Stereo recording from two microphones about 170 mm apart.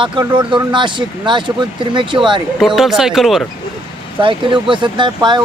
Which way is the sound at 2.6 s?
Centre (ahead or behind).